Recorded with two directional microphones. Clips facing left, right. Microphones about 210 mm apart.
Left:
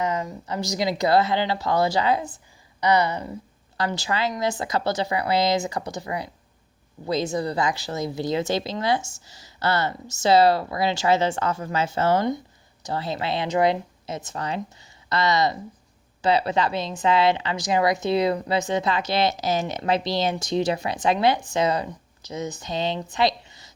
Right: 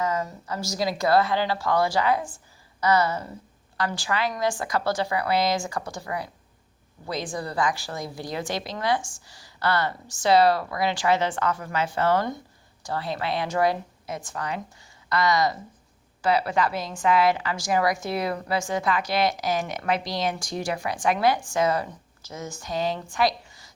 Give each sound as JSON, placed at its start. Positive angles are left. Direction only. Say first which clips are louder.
{"t": 0.0, "sound": "a woman's voice", "louder": "left 1 dB", "side_deg": 20}